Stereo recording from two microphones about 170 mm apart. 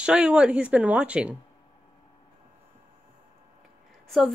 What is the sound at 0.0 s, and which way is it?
Speech, 5° right (ahead or behind).